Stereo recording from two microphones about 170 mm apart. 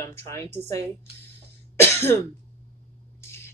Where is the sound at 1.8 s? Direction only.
15° left (ahead or behind).